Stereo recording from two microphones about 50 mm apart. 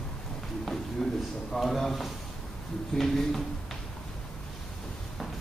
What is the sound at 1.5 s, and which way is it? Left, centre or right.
Speech, centre.